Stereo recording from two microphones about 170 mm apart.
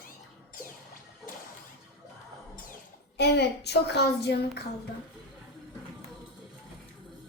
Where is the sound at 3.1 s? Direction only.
75° left (ahead or behind).